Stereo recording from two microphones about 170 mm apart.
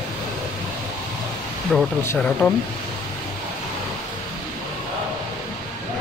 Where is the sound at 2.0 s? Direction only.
15° left (ahead or behind).